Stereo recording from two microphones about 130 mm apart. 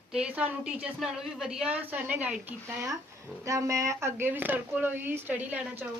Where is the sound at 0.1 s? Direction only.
10° right (ahead or behind).